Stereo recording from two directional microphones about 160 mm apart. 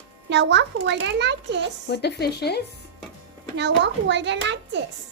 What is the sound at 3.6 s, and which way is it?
A child's voice, 90° right.